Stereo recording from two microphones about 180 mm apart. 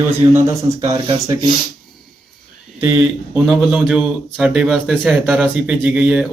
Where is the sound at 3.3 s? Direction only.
5° right (ahead or behind).